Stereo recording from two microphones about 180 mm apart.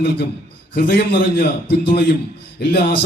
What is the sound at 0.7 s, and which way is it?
A man's voice, 75° left (ahead or behind).